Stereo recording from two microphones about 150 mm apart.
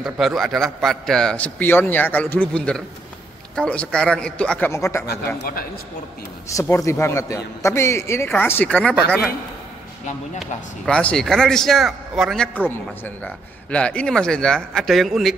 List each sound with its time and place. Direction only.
0.0 s a man's voice: centre (ahead or behind); by 5.0 s 20° left (ahead or behind)
5.1 s a man's voice: 80° left
6.5 s a man's voice: 20° left (ahead or behind)
10.4 s speech: 5° left (ahead or behind)
12.5 s speech: 10° left (ahead or behind)